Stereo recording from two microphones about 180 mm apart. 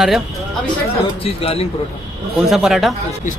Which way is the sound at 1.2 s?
35° left (ahead or behind).